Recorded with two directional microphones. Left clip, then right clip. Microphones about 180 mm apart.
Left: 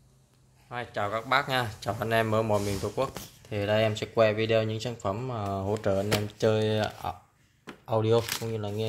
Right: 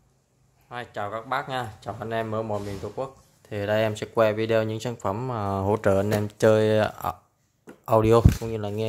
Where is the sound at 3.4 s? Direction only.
15° right (ahead or behind).